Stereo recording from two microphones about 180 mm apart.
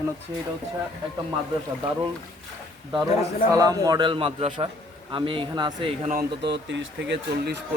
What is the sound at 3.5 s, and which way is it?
A man's voice, 20° right (ahead or behind).